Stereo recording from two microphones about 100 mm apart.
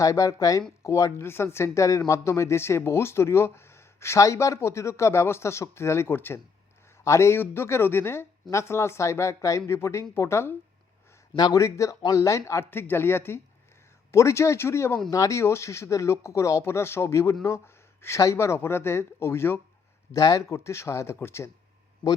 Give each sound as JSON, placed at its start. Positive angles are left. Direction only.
{"t": 0.0, "sound": "speech", "side_deg": 35}
{"t": 11.3, "sound": "speech", "side_deg": 45}
{"t": 20.1, "sound": "speech", "side_deg": 40}